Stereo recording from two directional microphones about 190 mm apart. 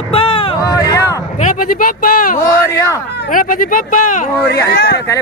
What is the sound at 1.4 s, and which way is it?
Speech, 45° left (ahead or behind).